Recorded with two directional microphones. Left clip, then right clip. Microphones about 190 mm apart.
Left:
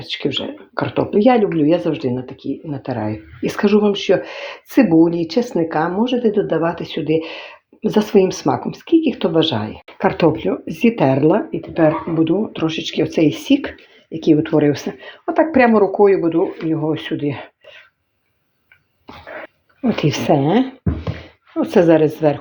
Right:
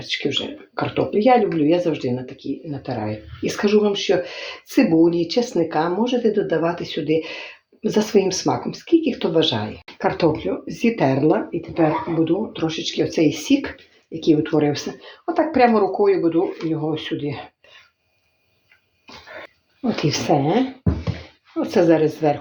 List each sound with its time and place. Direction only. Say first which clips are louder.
0.0 s speech: left 1 dB; 35° left (ahead or behind)
19.8 s speech: left 3 dB; 40° left (ahead or behind)